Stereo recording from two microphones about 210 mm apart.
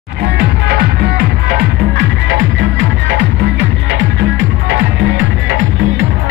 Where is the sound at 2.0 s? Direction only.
65° right (ahead or behind).